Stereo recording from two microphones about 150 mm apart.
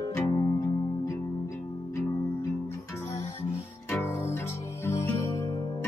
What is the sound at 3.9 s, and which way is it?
Music, 20° left (ahead or behind).